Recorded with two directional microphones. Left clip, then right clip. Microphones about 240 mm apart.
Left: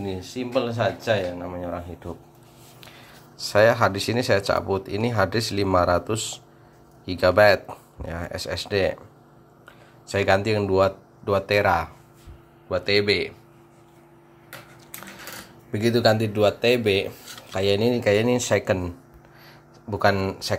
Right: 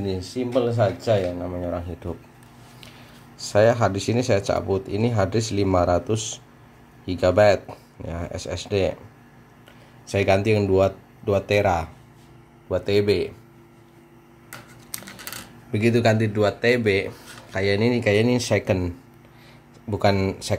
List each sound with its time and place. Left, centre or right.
0.1 s speech: centre
3.4 s speech: centre
7.1 s speech: centre
10.1 s speech: centre
15.8 s speech: centre
19.9 s speech: centre